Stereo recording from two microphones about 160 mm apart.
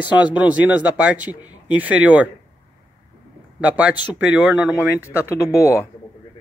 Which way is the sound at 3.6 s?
10° right (ahead or behind).